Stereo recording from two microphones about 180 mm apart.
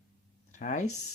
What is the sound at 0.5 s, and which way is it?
Speech, 40° left (ahead or behind).